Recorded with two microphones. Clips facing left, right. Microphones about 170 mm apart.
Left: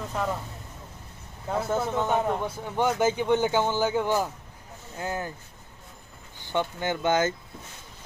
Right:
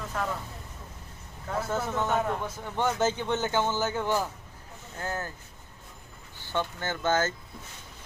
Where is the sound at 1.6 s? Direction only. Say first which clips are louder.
Left 3 dB; 15° left (ahead or behind).